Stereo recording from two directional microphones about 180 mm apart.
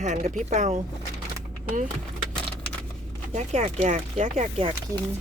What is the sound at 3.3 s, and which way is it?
Speech, 40° right (ahead or behind).